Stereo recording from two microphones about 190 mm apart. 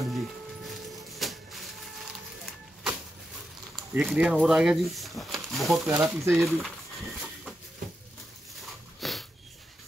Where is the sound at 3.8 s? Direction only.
Centre (ahead or behind).